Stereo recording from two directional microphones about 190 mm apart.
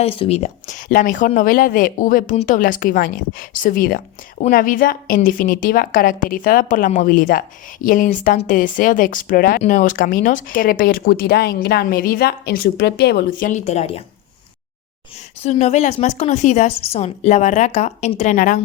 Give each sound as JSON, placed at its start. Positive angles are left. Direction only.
{"t": 0.0, "sound": "speech", "side_deg": 30}
{"t": 13.5, "sound": "a woman's voice", "side_deg": 35}
{"t": 15.4, "sound": "a woman's voice", "side_deg": 35}